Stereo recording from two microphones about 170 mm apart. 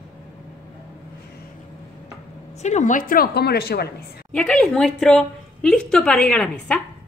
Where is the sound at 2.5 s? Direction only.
45° left (ahead or behind); by 3.9 s 65° left (ahead or behind).